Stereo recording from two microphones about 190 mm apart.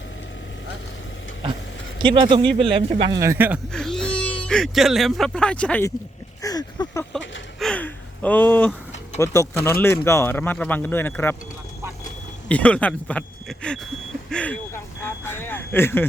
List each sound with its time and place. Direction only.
2.0 s a man's voice: 25° right (ahead or behind)
3.7 s speech: 5° left (ahead or behind)
6.4 s a sound: 20° left (ahead or behind)
7.6 s gasp: 5° left (ahead or behind)
9.1 s speech: 15° left (ahead or behind)
12.5 s speech: 5° left (ahead or behind)